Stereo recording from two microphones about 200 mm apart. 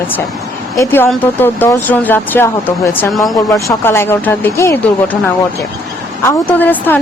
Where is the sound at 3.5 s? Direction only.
15° left (ahead or behind).